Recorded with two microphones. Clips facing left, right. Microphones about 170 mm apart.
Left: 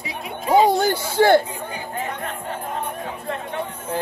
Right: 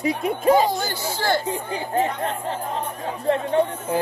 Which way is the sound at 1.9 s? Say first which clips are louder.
Right 8 dB; 35° right (ahead or behind).